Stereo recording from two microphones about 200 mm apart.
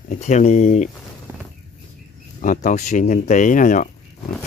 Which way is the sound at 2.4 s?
40° left (ahead or behind).